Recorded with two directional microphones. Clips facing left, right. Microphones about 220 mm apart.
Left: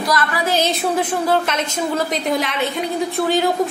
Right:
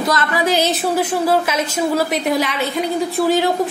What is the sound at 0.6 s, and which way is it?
A woman's voice, 5° right (ahead or behind).